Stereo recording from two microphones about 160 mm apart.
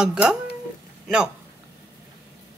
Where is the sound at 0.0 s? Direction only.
5° right (ahead or behind).